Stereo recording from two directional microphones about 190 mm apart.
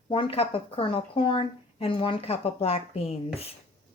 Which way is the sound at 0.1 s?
30° left (ahead or behind).